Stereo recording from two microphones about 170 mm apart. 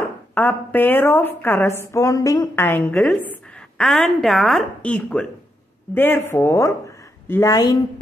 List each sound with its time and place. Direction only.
0.3 s a woman's voice: 10° left (ahead or behind)